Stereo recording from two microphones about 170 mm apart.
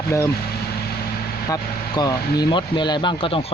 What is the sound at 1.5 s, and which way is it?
Speech, 25° left (ahead or behind).